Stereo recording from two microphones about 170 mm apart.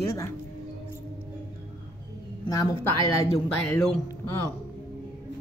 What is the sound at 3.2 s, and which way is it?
Speech, 15° left (ahead or behind).